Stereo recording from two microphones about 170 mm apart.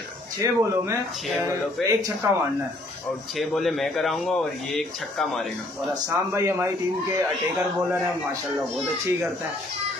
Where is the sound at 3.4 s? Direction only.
Centre (ahead or behind).